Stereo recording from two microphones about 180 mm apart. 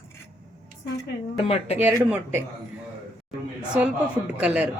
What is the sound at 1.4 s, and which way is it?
Speech, 35° left (ahead or behind).